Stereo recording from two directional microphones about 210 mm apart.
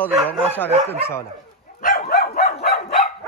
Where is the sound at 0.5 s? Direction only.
10° left (ahead or behind).